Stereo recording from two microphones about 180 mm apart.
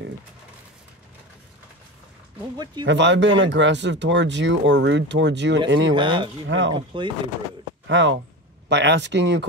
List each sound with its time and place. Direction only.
2.5 s speech: 25° right (ahead or behind)
2.8 s speech: 85° right
5.7 s speech: 90° right
5.9 s speech: 25° right (ahead or behind)
6.4 s speech: 90° right
6.7 s speech: 25° right (ahead or behind)
7.8 s speech: 90° right
8.6 s speech: 75° right (ahead or behind)